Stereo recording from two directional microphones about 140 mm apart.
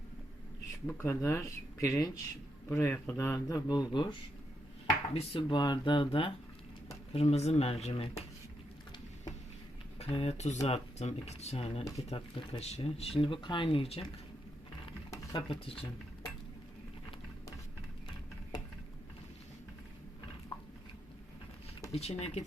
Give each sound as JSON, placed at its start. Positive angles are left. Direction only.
{"t": 0.9, "sound": "speech", "side_deg": 15}
{"t": 5.1, "sound": "speech", "side_deg": 40}
{"t": 10.0, "sound": "speech", "side_deg": 45}
{"t": 15.1, "sound": "speech", "side_deg": 25}
{"t": 21.9, "sound": "speech", "side_deg": 50}